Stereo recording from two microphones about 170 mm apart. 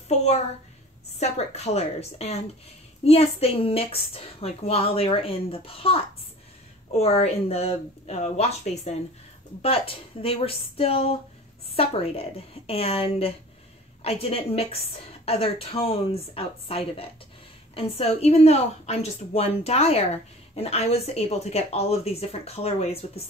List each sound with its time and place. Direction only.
1.2 s a woman's voice: 40° left (ahead or behind)
7.0 s a woman's voice: 35° left (ahead or behind)